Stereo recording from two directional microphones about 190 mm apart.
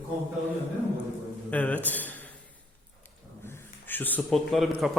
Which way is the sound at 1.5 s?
10° left (ahead or behind).